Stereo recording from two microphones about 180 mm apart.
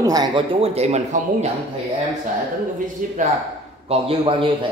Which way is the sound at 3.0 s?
45° right (ahead or behind).